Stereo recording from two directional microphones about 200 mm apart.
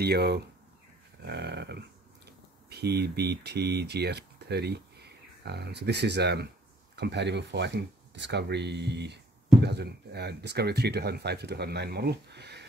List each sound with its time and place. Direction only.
0.0 s speech: 55° right (ahead or behind)
1.2 s a sound: 55° right (ahead or behind)
2.7 s speech: 55° right (ahead or behind)